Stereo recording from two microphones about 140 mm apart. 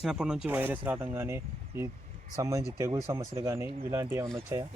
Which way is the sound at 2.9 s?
20° right (ahead or behind).